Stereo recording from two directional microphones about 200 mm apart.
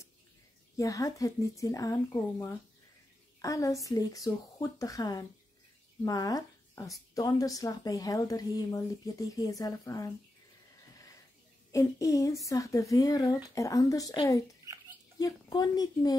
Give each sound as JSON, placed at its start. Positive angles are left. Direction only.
{"t": 0.7, "sound": "speech", "side_deg": 15}
{"t": 11.7, "sound": "speech", "side_deg": 15}